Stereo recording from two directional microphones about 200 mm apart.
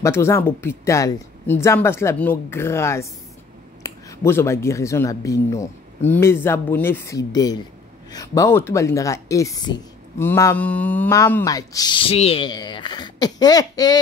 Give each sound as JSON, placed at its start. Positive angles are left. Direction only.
{"t": 0.0, "sound": "a woman's voice", "side_deg": 15}